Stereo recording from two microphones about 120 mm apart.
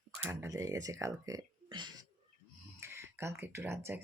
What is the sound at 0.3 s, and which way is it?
Speech, 25° right (ahead or behind).